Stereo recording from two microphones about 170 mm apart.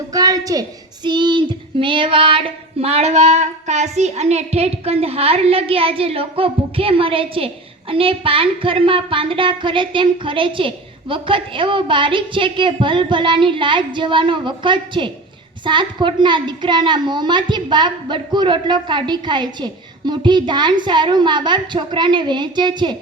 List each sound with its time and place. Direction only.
0.1 s a sound: 20° right (ahead or behind)
1.0 s child singing: 25° right (ahead or behind)
15.6 s a woman's voice: 25° right (ahead or behind)